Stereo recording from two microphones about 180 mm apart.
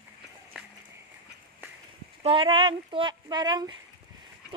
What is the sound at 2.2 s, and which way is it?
Speech, 30° right (ahead or behind).